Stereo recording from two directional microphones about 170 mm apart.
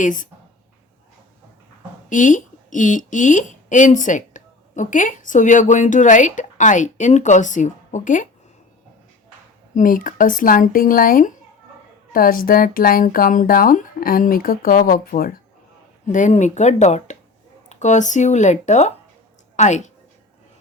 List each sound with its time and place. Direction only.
0.0 s speech: 50° left (ahead or behind)
2.0 s a woman's voice: 50° left (ahead or behind)
9.7 s speech: 50° left (ahead or behind)
16.0 s speech: 45° left (ahead or behind)